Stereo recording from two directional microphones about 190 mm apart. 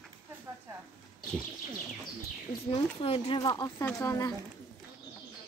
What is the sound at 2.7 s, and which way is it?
Speech, 30° left (ahead or behind).